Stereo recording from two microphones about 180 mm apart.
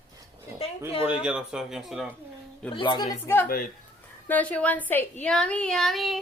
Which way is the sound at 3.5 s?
55° left (ahead or behind).